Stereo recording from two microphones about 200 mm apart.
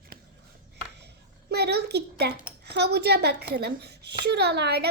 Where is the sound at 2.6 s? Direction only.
55° right (ahead or behind).